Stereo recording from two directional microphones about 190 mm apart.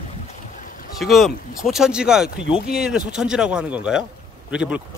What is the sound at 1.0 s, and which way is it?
Speech, centre (ahead or behind).